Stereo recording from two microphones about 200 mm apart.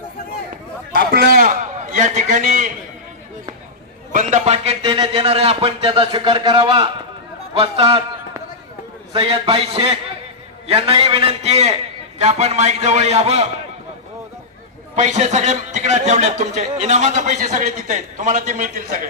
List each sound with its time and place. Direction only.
1.1 s a man's voice: 50° right (ahead or behind)
4.1 s a man's voice: 40° right (ahead or behind)
9.1 s a man's voice: 25° right (ahead or behind)
14.9 s a man's voice: 35° right (ahead or behind)